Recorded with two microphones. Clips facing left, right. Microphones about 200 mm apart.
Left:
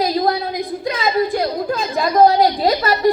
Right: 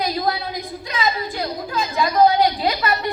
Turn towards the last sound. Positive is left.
turn(degrees=40)  # may be behind; listen again after turning